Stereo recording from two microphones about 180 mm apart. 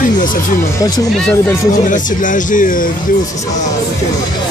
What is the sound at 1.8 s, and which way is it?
Speech, 45° left (ahead or behind).